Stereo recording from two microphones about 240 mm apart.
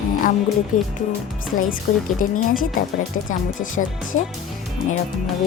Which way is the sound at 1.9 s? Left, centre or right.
Left.